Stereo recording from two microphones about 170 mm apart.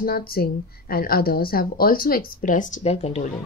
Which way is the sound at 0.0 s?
60° left (ahead or behind).